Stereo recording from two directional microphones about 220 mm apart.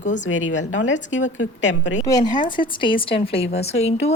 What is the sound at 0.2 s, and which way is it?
Speech, 65° left (ahead or behind).